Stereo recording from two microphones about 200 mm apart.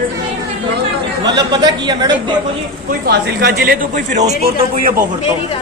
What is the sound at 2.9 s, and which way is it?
A man's voice, 55° right (ahead or behind).